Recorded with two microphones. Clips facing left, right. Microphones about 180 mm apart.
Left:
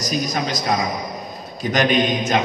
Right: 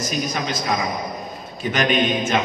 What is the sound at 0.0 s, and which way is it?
A man's voice, 40° left (ahead or behind).